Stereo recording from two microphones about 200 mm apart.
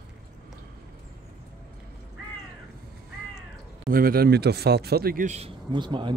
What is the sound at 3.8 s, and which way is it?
A man's voice, 45° right (ahead or behind).